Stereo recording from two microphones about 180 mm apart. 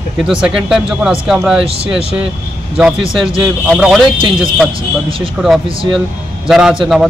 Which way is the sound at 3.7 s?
Centre (ahead or behind).